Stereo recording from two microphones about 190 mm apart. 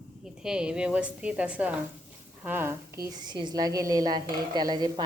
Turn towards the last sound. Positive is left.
turn(degrees=-20)  # may be behind; listen again after turning